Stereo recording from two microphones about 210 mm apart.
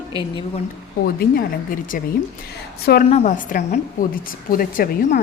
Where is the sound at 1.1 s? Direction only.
45° left (ahead or behind).